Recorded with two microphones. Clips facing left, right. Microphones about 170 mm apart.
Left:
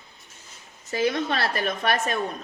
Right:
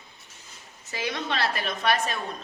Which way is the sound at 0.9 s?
45° left (ahead or behind).